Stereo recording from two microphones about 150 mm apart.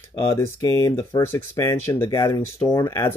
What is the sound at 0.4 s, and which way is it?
Speech, 25° left (ahead or behind).